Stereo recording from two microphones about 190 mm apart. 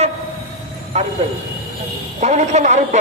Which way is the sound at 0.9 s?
35° right (ahead or behind).